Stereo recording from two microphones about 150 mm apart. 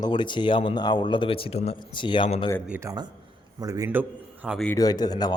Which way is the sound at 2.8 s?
25° right (ahead or behind).